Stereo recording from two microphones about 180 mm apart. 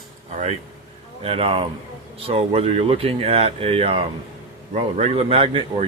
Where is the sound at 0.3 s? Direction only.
40° right (ahead or behind).